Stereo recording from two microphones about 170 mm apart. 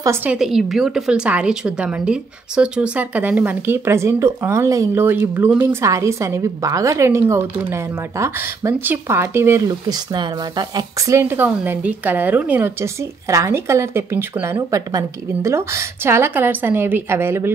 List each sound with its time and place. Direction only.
0.0 s a woman's voice: 10° right (ahead or behind)